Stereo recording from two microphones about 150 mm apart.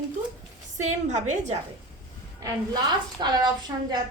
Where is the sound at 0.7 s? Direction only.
55° right (ahead or behind).